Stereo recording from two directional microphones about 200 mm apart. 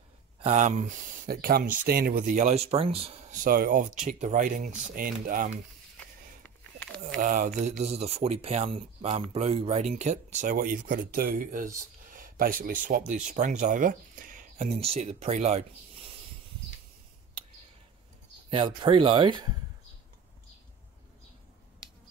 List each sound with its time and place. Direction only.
0.4 s speech: 35° right (ahead or behind)
3.4 s speech: 45° right (ahead or behind)
5.9 s a sound: 10° left (ahead or behind)
7.2 s speech: 40° right (ahead or behind)
18.5 s speech: 25° right (ahead or behind)